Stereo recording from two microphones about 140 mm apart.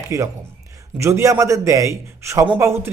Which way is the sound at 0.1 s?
20° right (ahead or behind).